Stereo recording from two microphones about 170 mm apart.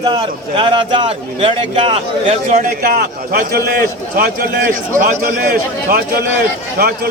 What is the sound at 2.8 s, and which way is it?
A man's voice, 65° right (ahead or behind).